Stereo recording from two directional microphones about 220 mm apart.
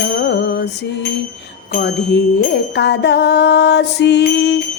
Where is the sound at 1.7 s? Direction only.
50° left (ahead or behind).